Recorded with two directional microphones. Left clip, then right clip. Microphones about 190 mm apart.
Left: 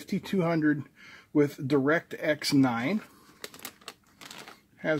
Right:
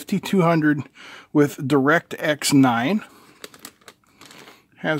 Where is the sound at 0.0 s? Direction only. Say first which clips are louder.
Right 9 dB; 50° right (ahead or behind).